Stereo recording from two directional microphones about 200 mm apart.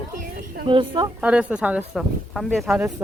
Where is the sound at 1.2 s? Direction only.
5° right (ahead or behind).